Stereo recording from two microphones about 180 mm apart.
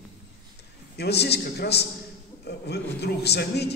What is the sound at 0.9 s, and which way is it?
A man's voice, 65° left (ahead or behind).